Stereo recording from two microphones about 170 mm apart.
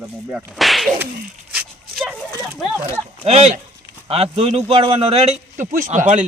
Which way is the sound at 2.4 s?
Centre (ahead or behind).